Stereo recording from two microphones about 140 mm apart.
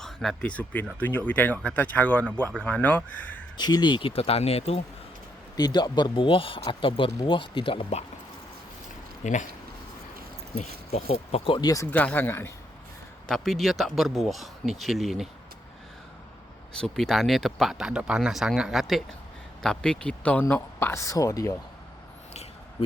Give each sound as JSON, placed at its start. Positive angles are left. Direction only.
{"t": 0.0, "sound": "speech", "side_deg": 0}
{"t": 3.6, "sound": "speech", "side_deg": 30}
{"t": 5.5, "sound": "speech", "side_deg": 30}
{"t": 9.2, "sound": "speech", "side_deg": 60}
{"t": 10.6, "sound": "speech", "side_deg": 45}
{"t": 11.6, "sound": "speech", "side_deg": 25}
{"t": 11.9, "sound": "speech", "side_deg": 10}
{"t": 13.2, "sound": "speech", "side_deg": 0}
{"t": 16.8, "sound": "speech", "side_deg": 5}